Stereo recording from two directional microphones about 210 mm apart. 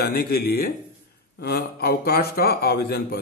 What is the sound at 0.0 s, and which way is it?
A man's voice, 50° left (ahead or behind).